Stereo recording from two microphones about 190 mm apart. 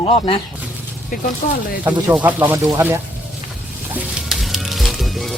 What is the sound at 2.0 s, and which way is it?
Speech, 10° right (ahead or behind).